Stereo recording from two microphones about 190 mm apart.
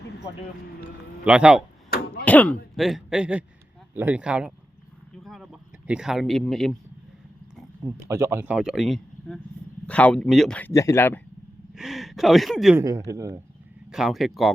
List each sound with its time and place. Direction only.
1.2 s speech: 5° right (ahead or behind)
2.2 s a man's voice: 10° left (ahead or behind)
5.2 s a sound: centre (ahead or behind)
7.9 s a man's voice: 15° right (ahead or behind); by 11.2 s 10° left (ahead or behind)
11.7 s speech: centre (ahead or behind)
12.8 s speech: 15° right (ahead or behind)
13.9 s speech: centre (ahead or behind)